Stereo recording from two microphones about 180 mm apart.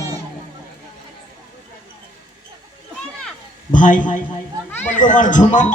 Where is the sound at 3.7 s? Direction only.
45° left (ahead or behind).